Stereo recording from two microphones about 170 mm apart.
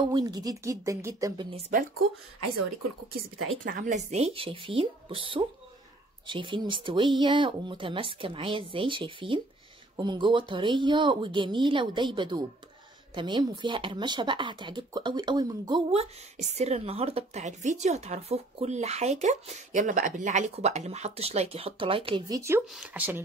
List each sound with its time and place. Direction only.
0.1 s speech: 25° right (ahead or behind)
3.6 s speech: 55° right (ahead or behind); by 15.8 s 25° right (ahead or behind)
15.9 s speech: 40° right (ahead or behind)
22.2 s speech: 20° right (ahead or behind)
22.7 s speech: 5° right (ahead or behind)